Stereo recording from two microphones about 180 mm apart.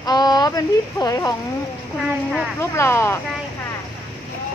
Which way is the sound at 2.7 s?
15° left (ahead or behind).